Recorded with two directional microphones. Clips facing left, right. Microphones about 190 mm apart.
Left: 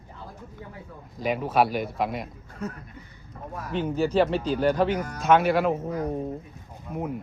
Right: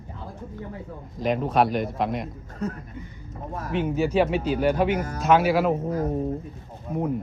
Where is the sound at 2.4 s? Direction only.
40° right (ahead or behind).